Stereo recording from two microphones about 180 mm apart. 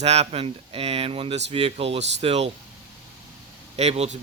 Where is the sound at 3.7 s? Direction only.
35° right (ahead or behind).